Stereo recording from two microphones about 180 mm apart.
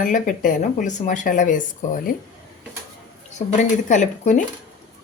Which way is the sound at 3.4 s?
40° left (ahead or behind).